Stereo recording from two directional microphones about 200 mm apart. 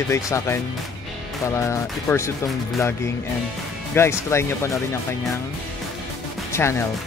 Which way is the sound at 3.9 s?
15° left (ahead or behind).